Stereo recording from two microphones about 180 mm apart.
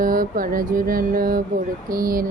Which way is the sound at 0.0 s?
50° right (ahead or behind).